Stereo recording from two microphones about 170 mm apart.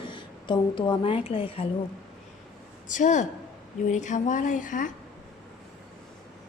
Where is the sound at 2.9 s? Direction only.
45° left (ahead or behind).